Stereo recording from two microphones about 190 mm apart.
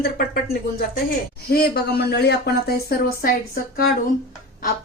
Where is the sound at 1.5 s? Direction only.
60° left (ahead or behind).